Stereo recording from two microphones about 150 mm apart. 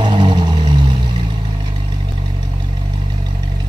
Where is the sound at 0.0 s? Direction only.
30° right (ahead or behind).